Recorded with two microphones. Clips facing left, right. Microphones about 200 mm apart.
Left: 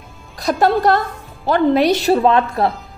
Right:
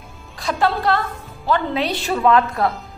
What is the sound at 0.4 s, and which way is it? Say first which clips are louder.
A woman's voice: left 5 dB; 40° left (ahead or behind).